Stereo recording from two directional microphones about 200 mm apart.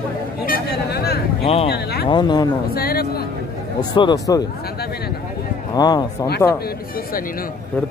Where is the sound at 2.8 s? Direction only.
50° left (ahead or behind).